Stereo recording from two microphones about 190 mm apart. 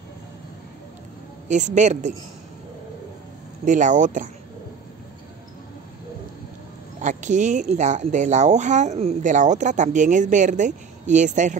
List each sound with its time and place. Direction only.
1.5 s speech: 40° right (ahead or behind)
3.6 s speech: 40° right (ahead or behind)
7.0 s speech: 40° right (ahead or behind)